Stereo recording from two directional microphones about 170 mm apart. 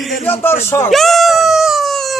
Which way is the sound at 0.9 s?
Centre (ahead or behind).